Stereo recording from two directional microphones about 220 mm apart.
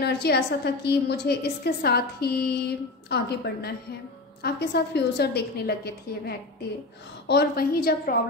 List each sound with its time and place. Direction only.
0.0 s a woman's voice: 45° left (ahead or behind)